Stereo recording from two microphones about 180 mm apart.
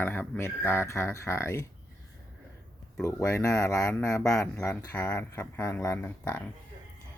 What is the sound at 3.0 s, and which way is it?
Speech, 15° left (ahead or behind).